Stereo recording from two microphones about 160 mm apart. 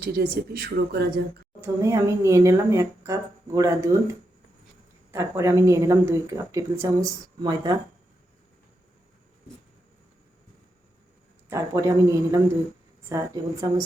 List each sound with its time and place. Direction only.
0.0 s a woman's voice: 75° right (ahead or behind)
1.6 s speech: 20° right (ahead or behind)
5.1 s speech: 15° right (ahead or behind)
11.4 s speech: 20° right (ahead or behind)